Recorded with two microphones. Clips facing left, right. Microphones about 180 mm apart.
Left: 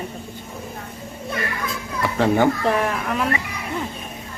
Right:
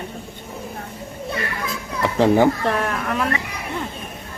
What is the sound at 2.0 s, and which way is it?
Speech, 20° right (ahead or behind).